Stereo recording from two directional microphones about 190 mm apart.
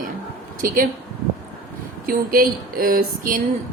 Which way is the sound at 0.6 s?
45° right (ahead or behind).